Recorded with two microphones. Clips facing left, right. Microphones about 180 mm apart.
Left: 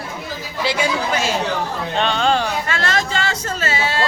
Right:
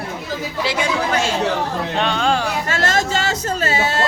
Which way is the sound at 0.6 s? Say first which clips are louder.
Left 2 dB; centre (ahead or behind).